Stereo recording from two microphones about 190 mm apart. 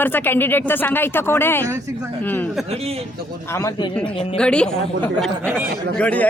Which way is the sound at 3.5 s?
20° left (ahead or behind).